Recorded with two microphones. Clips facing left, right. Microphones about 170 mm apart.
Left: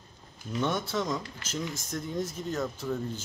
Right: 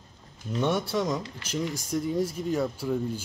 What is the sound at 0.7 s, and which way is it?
Speech, 10° right (ahead or behind).